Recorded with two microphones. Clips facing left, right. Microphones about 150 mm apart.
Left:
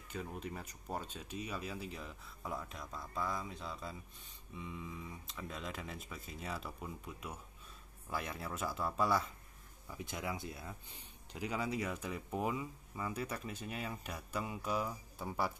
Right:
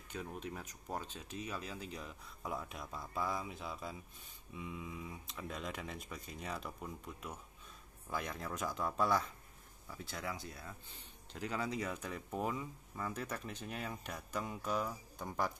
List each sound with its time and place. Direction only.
0.1 s speech: centre (ahead or behind); by 10.7 s 25° left (ahead or behind)
11.3 s speech: 10° left (ahead or behind)